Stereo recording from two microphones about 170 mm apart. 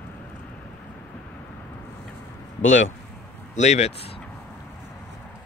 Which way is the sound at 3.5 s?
40° left (ahead or behind).